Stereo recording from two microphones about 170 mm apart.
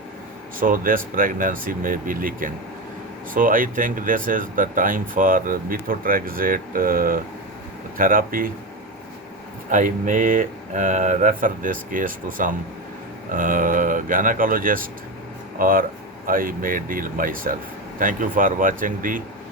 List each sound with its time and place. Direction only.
0.6 s speech: 55° right (ahead or behind)
9.6 s speech: 50° right (ahead or behind)